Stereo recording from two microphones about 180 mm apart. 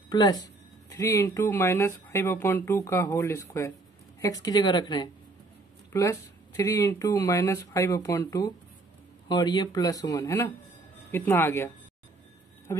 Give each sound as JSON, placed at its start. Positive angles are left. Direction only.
{"t": 0.1, "sound": "speech", "side_deg": 20}